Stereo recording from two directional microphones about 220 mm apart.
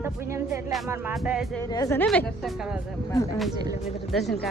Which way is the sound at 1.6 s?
15° left (ahead or behind).